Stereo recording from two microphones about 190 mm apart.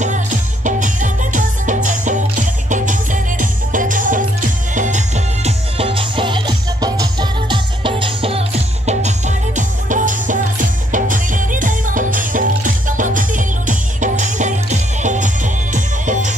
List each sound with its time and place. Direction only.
0.0 s music: 40° right (ahead or behind)